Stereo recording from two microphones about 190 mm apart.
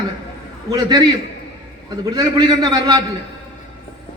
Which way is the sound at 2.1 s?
20° right (ahead or behind).